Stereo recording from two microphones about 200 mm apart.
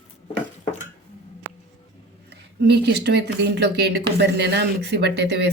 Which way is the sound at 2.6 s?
55° right (ahead or behind).